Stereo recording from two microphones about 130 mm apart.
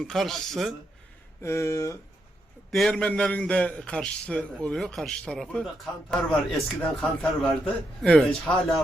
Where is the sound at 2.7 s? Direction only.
5° left (ahead or behind).